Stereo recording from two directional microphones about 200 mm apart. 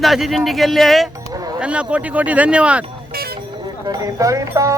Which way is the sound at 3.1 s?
50° right (ahead or behind).